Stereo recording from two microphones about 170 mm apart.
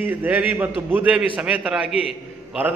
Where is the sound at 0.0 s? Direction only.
10° right (ahead or behind).